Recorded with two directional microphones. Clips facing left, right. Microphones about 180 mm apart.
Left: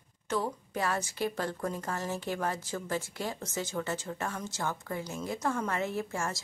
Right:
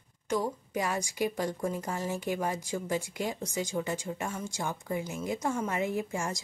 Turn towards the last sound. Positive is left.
turn(degrees=-15)  # may be behind; listen again after turning